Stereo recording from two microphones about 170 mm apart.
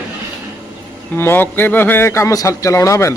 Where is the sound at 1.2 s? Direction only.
15° left (ahead or behind).